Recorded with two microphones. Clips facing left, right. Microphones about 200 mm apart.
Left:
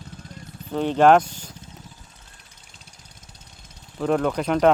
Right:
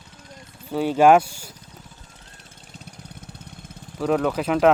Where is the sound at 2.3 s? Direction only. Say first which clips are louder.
Right 8 dB; 50° right (ahead or behind).